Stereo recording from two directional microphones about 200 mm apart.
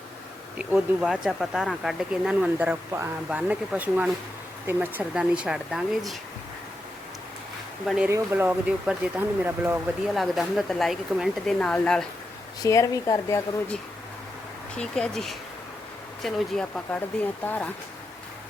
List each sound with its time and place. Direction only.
0.6 s speech: 5° right (ahead or behind)
7.9 s speech: 5° right (ahead or behind)
12.6 s speech: 15° left (ahead or behind)
14.8 s speech: 5° left (ahead or behind)